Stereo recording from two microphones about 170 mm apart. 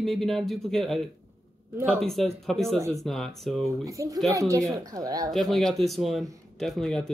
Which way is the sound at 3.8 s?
20° right (ahead or behind).